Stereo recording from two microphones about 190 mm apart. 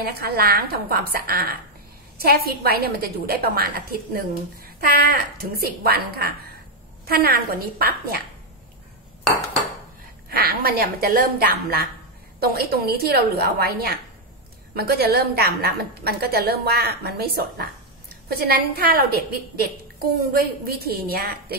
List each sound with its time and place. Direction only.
0.0 s a woman's voice: 55° right (ahead or behind)
10.3 s a woman's voice: 50° right (ahead or behind)